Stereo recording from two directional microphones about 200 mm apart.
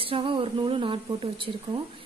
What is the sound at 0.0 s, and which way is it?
A woman's voice, 25° right (ahead or behind).